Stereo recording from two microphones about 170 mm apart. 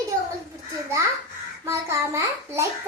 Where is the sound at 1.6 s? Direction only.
15° right (ahead or behind).